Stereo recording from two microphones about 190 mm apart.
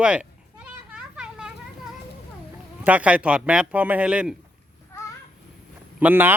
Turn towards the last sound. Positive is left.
turn(degrees=-10)  # may be behind; listen again after turning